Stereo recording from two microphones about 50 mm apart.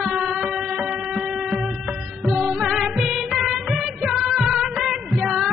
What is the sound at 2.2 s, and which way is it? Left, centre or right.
Music, centre.